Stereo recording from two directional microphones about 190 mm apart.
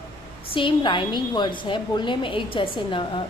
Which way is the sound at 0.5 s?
25° left (ahead or behind).